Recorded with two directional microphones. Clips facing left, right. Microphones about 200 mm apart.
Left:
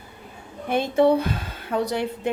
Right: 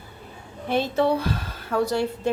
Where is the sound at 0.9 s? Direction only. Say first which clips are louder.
Left 8 dB; 20° left (ahead or behind).